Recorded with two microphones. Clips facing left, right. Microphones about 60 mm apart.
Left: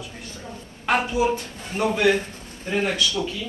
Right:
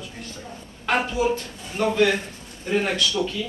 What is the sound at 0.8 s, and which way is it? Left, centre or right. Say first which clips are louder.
A man's voice: left 1 dB; centre.